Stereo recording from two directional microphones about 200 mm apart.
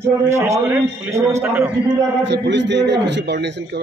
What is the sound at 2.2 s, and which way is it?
A man's voice, 60° right (ahead or behind).